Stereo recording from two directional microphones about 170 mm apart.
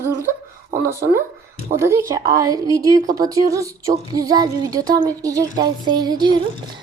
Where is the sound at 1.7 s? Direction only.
15° right (ahead or behind).